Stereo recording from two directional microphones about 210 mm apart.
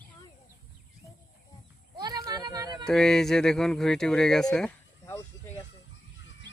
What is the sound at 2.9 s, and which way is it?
Speech, centre (ahead or behind).